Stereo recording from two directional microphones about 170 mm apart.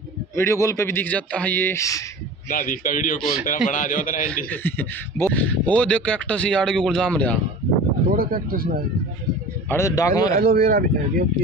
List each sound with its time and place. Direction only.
0.4 s speech: 15° left (ahead or behind)
2.5 s a man's voice: 60° left (ahead or behind)
4.5 s speech: 10° left (ahead or behind)
8.1 s speech: 60° right (ahead or behind)
9.7 s speech: 15° left (ahead or behind)
10.3 s speech: 60° right (ahead or behind)